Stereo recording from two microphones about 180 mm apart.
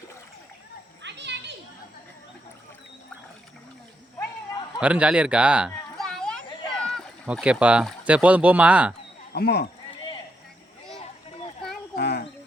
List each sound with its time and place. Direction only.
1.0 s children playing: 75° right (ahead or behind)
4.8 s speech: 5° right (ahead or behind)
6.7 s a sound: 5° left (ahead or behind)
7.3 s speech: 5° right (ahead or behind)
9.3 s speech: 60° left (ahead or behind)
11.9 s a sound: 65° left (ahead or behind)